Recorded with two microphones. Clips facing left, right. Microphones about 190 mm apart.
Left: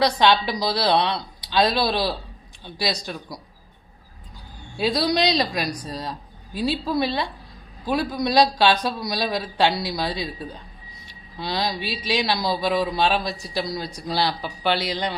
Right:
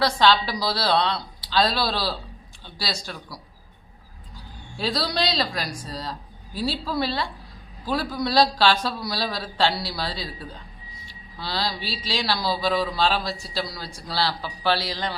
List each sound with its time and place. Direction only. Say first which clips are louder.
0.0 s a woman's voice: left 1 dB; 20° left (ahead or behind)
4.8 s a woman's voice: left 5 dB; 15° left (ahead or behind)